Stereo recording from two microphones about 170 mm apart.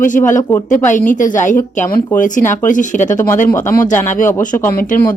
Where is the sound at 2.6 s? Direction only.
50° left (ahead or behind).